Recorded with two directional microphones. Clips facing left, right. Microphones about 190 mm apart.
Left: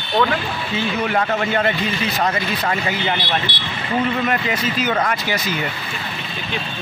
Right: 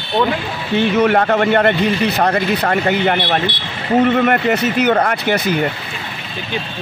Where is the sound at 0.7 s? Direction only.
65° right (ahead or behind).